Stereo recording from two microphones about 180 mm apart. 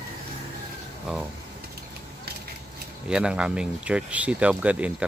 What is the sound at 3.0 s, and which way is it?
Speech, 5° right (ahead or behind).